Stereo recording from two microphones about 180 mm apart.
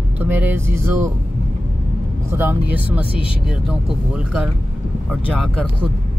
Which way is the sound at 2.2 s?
10° right (ahead or behind).